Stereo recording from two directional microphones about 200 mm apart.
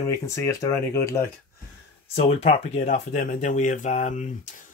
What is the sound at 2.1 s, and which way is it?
Speech, 30° left (ahead or behind).